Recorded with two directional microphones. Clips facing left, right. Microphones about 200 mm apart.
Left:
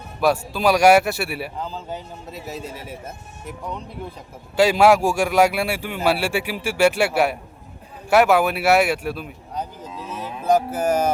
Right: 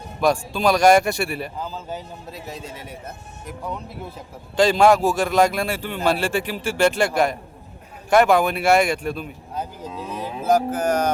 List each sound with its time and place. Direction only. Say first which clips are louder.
0.2 s a man's voice: even; 5° left (ahead or behind)
4.5 s a man's voice: left 1 dB; 10° left (ahead or behind)
10.1 s music: right 1 dB; 15° right (ahead or behind)
10.5 s a man's voice: left 1 dB; 5° left (ahead or behind)